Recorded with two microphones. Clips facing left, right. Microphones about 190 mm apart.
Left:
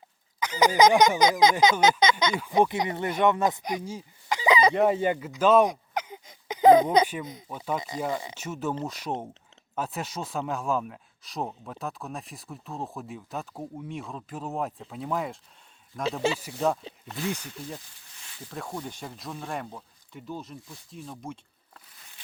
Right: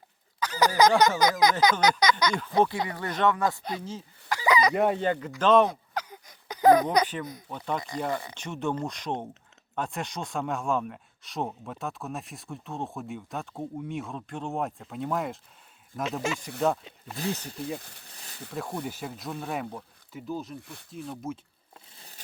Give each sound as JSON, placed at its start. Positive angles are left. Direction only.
{"t": 0.3, "sound": "a sound", "side_deg": 20}
{"t": 1.8, "sound": "speech", "side_deg": 25}
{"t": 4.7, "sound": "speech", "side_deg": 0}
{"t": 7.0, "sound": "speech", "side_deg": 10}
{"t": 17.2, "sound": "speech", "side_deg": -35}
{"t": 18.5, "sound": "speech", "side_deg": -5}
{"t": 20.6, "sound": "speech", "side_deg": -65}
{"t": 21.2, "sound": "speech", "side_deg": -5}
{"t": 21.9, "sound": "a sound", "side_deg": -35}